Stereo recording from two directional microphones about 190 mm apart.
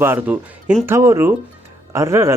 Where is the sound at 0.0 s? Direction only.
10° right (ahead or behind).